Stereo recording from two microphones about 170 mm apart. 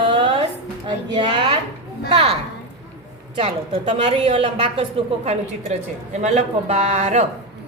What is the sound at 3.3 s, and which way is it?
A woman's voice, 35° right (ahead or behind).